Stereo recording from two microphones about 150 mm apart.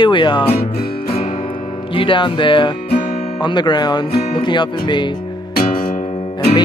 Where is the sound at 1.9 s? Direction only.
35° left (ahead or behind).